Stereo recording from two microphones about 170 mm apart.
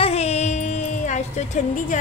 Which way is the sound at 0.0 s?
40° left (ahead or behind).